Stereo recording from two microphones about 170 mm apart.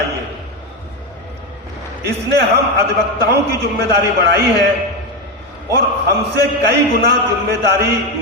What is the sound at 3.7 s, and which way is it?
Speech, 80° right.